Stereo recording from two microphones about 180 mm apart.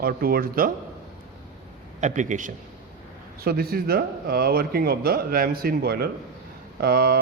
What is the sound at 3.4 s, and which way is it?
Speech, 60° right (ahead or behind).